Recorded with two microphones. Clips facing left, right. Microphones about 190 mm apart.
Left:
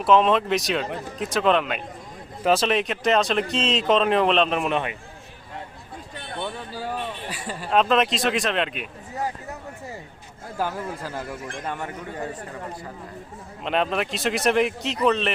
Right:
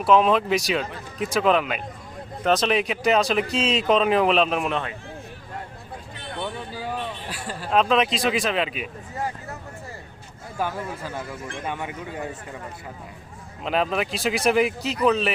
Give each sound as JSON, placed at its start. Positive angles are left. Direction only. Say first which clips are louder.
{"t": 0.0, "sound": "speech", "louder": "even", "side_deg": 0}
{"t": 4.7, "sound": "speech", "louder": "left 2 dB", "side_deg": 15}
{"t": 7.4, "sound": "speech", "louder": "even", "side_deg": 0}
{"t": 10.6, "sound": "speech", "louder": "even", "side_deg": 5}
{"t": 11.8, "sound": "a man's voice", "louder": "even", "side_deg": -15}
{"t": 13.7, "sound": "speech", "louder": "even", "side_deg": 0}